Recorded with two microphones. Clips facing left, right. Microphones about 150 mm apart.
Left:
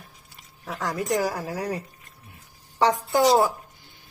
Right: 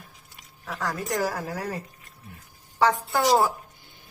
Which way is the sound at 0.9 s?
15° left (ahead or behind).